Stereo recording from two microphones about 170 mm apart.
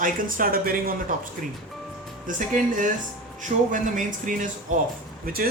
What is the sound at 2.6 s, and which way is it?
Speech, 50° right (ahead or behind).